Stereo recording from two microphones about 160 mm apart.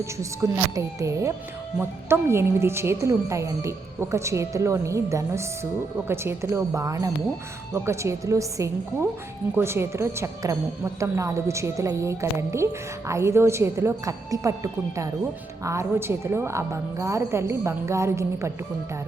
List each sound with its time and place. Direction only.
0.8 s a woman's voice: 20° right (ahead or behind)